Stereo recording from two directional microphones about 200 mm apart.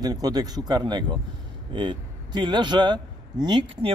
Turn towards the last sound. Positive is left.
turn(degrees=-25)  # may be behind; listen again after turning